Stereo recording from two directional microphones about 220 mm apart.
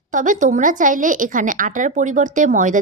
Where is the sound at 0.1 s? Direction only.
35° right (ahead or behind).